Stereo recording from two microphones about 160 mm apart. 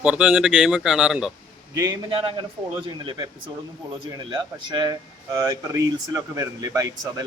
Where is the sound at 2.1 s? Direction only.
35° right (ahead or behind).